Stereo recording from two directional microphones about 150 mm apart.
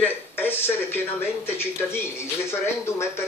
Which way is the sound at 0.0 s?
15° left (ahead or behind).